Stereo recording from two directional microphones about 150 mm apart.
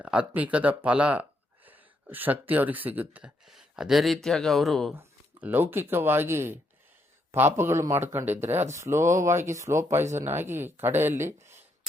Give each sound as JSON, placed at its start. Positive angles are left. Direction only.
{"t": 0.0, "sound": "speech", "side_deg": -10}
{"t": 4.9, "sound": "speech", "side_deg": -10}